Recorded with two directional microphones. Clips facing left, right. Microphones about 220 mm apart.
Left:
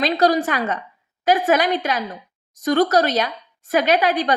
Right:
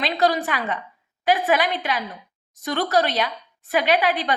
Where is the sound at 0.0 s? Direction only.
40° left (ahead or behind).